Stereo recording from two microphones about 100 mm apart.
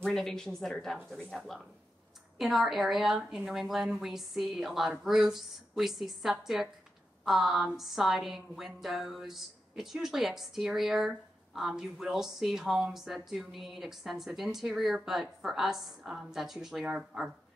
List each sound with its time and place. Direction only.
0.0 s a woman's voice: 5° left (ahead or behind)